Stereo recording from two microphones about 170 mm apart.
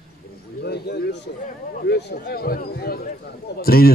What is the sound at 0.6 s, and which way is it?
A man's voice, 75° left (ahead or behind).